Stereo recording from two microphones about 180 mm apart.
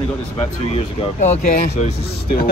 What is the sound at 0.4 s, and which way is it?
Speech, 35° left (ahead or behind).